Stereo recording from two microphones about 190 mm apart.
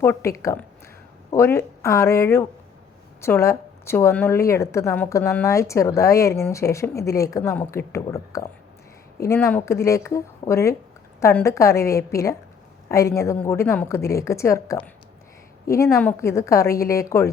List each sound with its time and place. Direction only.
0.0 s a woman's voice: 15° left (ahead or behind)